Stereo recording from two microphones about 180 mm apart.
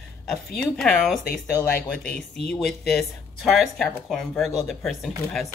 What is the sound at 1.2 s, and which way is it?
Speech, 55° left (ahead or behind).